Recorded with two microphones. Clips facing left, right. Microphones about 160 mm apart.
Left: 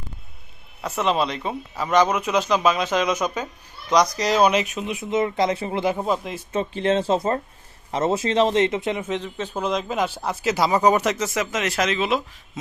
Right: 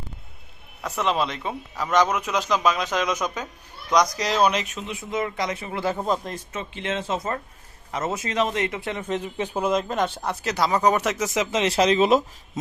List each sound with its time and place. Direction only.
0.8 s speech: 5° left (ahead or behind); by 5.8 s 30° left (ahead or behind)
5.8 s speech: 10° left (ahead or behind)
6.5 s a man's voice: 35° left (ahead or behind)
9.0 s speech: centre (ahead or behind)
9.2 s speech: 10° right (ahead or behind)
11.3 s speech: 30° right (ahead or behind)